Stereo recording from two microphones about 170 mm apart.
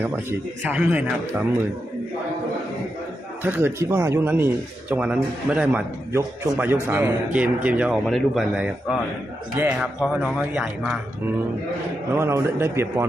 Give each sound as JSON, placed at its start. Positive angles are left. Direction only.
{"t": 0.0, "sound": "speech", "side_deg": -10}
{"t": 3.4, "sound": "speech", "side_deg": -10}
{"t": 9.6, "sound": "speech", "side_deg": -15}
{"t": 10.0, "sound": "a man's voice", "side_deg": -5}